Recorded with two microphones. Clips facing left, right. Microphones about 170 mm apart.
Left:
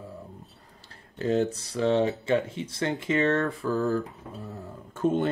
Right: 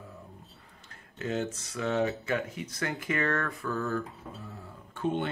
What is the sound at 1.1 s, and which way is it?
Speech, 35° left (ahead or behind).